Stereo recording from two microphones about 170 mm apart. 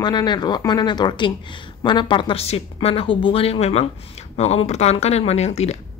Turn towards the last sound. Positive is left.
turn(degrees=40)  # may be behind; listen again after turning